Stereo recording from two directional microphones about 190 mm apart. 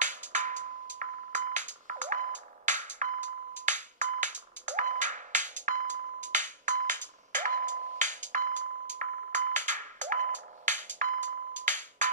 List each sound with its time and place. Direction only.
0.0 s music: 40° right (ahead or behind)